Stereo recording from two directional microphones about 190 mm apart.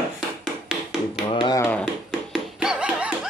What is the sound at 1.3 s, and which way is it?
Speech, 20° left (ahead or behind).